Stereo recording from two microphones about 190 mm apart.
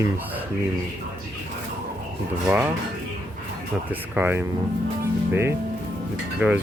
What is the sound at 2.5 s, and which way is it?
Speech, 5° right (ahead or behind).